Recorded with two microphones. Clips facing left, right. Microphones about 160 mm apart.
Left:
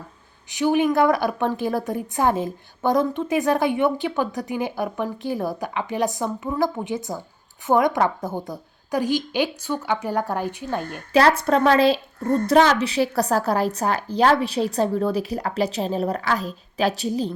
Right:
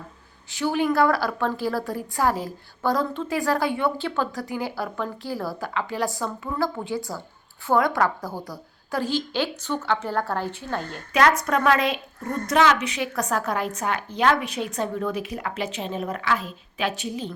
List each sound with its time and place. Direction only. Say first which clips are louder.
0.5 s a woman's voice: left 3 dB; 15° left (ahead or behind)
11.1 s speech: left 3 dB; 30° left (ahead or behind)